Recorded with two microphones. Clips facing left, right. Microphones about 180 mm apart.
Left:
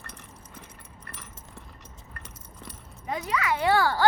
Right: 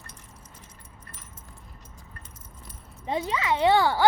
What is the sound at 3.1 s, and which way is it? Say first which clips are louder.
Speech: right 2 dB; 25° right (ahead or behind).